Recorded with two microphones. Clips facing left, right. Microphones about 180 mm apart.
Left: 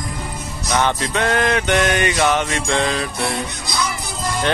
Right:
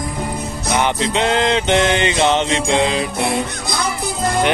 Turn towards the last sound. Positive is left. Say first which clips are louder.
# right 5 dB
turn(degrees=-55)  # may be behind; listen again after turning